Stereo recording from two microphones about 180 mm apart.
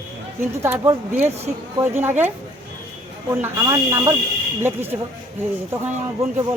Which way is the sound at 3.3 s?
15° right (ahead or behind).